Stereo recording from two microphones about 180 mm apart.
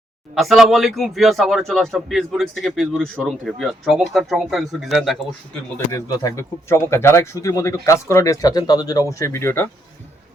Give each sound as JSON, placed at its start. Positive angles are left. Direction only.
{"t": 0.3, "sound": "a man's voice", "side_deg": 0}
{"t": 5.7, "sound": "speech", "side_deg": 20}